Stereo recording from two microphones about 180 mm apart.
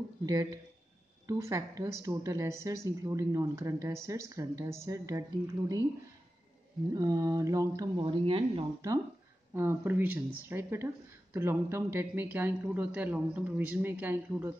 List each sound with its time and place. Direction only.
0.3 s mantra: 20° right (ahead or behind)
1.2 s a woman's voice: 20° right (ahead or behind)
6.9 s mantra: 20° right (ahead or behind)
8.0 s speech: 30° right (ahead or behind)
9.5 s a woman's voice: 10° right (ahead or behind)